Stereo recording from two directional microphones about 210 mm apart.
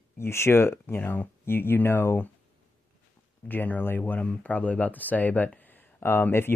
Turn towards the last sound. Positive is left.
turn(degrees=10)  # may be behind; listen again after turning